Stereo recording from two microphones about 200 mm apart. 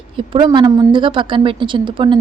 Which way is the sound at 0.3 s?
20° right (ahead or behind).